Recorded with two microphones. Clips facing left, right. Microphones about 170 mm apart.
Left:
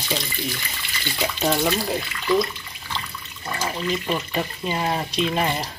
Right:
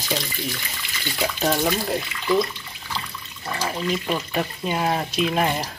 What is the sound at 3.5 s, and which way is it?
Speech, 5° right (ahead or behind).